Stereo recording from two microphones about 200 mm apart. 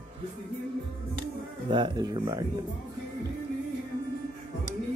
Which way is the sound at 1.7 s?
20° right (ahead or behind).